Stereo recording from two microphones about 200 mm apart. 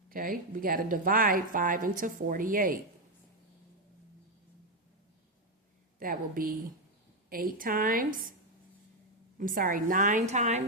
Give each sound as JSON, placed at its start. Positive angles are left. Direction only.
{"t": 0.1, "sound": "speech", "side_deg": -45}
{"t": 6.0, "sound": "speech", "side_deg": -45}
{"t": 9.4, "sound": "a woman's voice", "side_deg": -45}